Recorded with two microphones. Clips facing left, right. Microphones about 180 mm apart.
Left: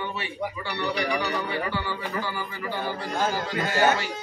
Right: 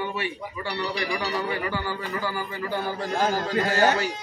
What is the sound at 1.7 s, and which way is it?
A man's voice, 45° right (ahead or behind).